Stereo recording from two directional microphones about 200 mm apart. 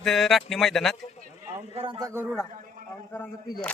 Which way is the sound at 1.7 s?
25° right (ahead or behind).